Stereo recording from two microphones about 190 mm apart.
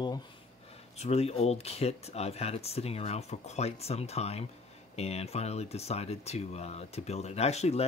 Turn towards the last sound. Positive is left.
turn(degrees=35)  # may be behind; listen again after turning